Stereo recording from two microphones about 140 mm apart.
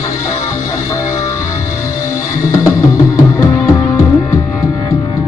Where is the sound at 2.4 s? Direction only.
25° left (ahead or behind).